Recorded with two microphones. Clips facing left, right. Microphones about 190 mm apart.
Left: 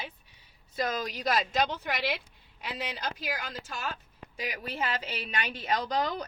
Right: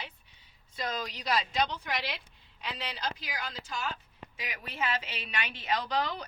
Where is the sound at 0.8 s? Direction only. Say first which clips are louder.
Left 4 dB; 45° left (ahead or behind).